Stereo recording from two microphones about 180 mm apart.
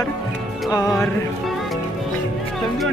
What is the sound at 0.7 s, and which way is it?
Music, 20° left (ahead or behind).